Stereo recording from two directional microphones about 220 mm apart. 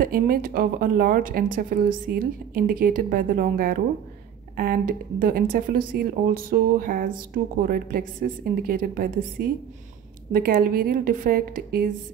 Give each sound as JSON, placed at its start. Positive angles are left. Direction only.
{"t": 0.0, "sound": "speech", "side_deg": -40}
{"t": 5.2, "sound": "speech", "side_deg": -40}